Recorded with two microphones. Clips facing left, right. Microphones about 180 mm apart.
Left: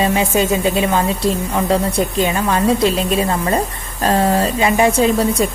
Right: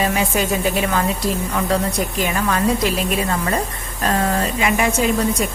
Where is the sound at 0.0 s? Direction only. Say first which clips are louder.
Left 4 dB; 25° left (ahead or behind).